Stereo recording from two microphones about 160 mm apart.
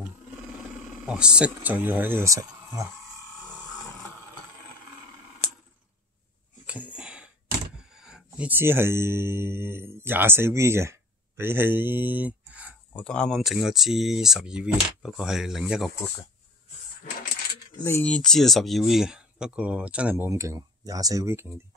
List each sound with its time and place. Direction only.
1.0 s speech: 5° right (ahead or behind)
6.6 s a sound: 10° right (ahead or behind)
7.8 s speech: 5° right (ahead or behind)
12.9 s speech: 5° left (ahead or behind)
17.8 s speech: 10° left (ahead or behind); by 21.5 s 15° right (ahead or behind)